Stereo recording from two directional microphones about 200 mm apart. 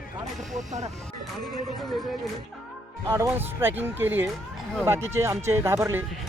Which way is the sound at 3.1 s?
10° right (ahead or behind).